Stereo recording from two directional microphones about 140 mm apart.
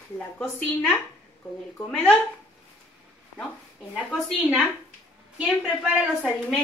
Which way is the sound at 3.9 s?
5° right (ahead or behind).